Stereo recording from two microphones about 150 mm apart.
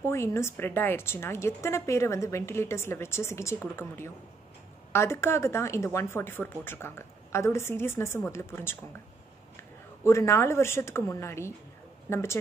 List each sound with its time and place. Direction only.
0.0 s a woman's voice: 20° left (ahead or behind)